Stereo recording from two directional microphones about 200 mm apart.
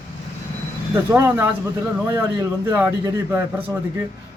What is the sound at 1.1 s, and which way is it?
A man's voice, 10° right (ahead or behind).